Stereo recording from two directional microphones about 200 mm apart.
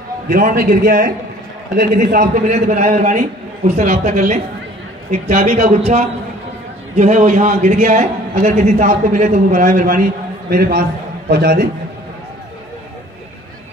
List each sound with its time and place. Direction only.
0.3 s a man's voice: 45° right (ahead or behind)